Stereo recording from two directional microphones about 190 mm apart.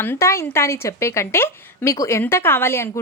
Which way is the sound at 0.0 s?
15° left (ahead or behind).